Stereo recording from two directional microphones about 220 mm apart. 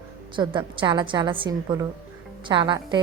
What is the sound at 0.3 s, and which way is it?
A woman's voice, 20° right (ahead or behind).